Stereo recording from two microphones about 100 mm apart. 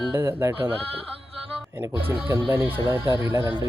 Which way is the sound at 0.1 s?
25° right (ahead or behind).